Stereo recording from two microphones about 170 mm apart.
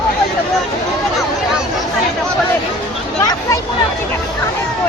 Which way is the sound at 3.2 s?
20° left (ahead or behind).